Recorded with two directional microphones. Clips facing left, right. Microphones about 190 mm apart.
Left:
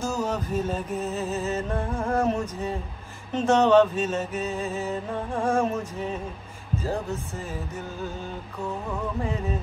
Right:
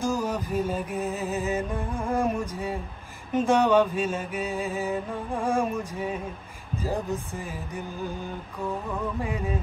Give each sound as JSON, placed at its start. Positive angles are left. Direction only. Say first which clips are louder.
{"t": 0.0, "sound": "music", "louder": "even", "side_deg": -10}